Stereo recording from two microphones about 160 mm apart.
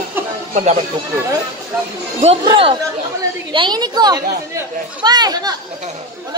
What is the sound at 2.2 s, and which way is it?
A woman's voice, 30° right (ahead or behind).